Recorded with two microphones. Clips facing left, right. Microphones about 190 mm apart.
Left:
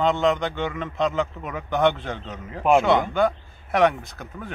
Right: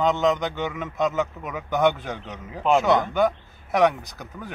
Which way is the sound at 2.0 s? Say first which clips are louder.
Left 1 dB; 15° right (ahead or behind).